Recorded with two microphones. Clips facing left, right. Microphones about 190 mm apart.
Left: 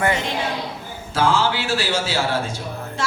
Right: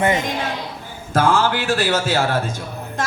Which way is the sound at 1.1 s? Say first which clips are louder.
Right 2 dB; 50° right (ahead or behind).